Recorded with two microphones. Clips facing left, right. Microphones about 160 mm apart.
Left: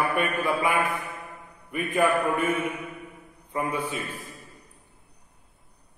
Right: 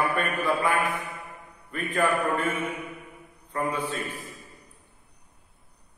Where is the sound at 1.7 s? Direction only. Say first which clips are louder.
Left 3 dB; 15° left (ahead or behind).